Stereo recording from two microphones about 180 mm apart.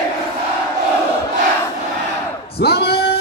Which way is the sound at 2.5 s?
65° left (ahead or behind).